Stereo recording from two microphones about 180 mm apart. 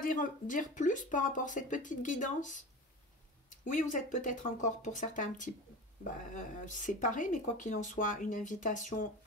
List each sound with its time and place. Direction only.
0.0 s speech: 45° left (ahead or behind)